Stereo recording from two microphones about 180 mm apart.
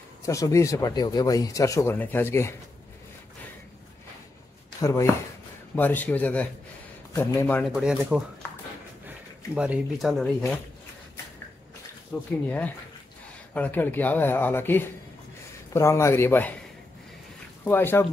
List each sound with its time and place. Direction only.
0.2 s speech: 15° left (ahead or behind)
4.7 s speech: 20° left (ahead or behind)
7.7 s speech: 5° right (ahead or behind)
9.6 s speech: 5° right (ahead or behind)
12.1 s speech: 15° left (ahead or behind)
17.6 s speech: 10° left (ahead or behind)